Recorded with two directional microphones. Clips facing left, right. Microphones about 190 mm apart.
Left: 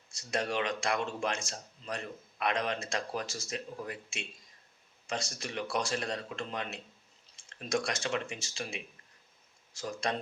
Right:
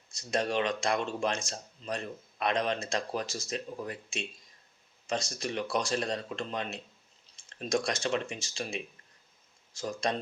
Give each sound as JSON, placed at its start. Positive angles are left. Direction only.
{"t": 0.2, "sound": "speech", "side_deg": -20}
{"t": 9.7, "sound": "speech", "side_deg": -20}